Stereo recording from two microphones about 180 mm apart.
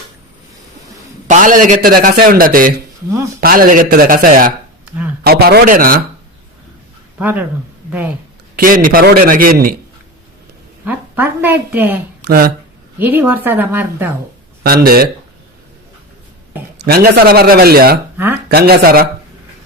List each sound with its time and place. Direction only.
1.3 s a man's voice: 45° right (ahead or behind)
7.2 s a woman's voice: 10° right (ahead or behind)
8.5 s a man's voice: 50° right (ahead or behind)
10.8 s a woman's voice: 10° right (ahead or behind)
12.2 s speech: 60° right (ahead or behind)
13.0 s a woman's voice: 10° right (ahead or behind)
14.6 s speech: 55° right (ahead or behind)
16.8 s speech: 55° right (ahead or behind)